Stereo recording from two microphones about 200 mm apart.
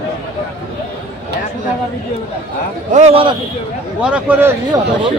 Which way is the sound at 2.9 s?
35° right (ahead or behind).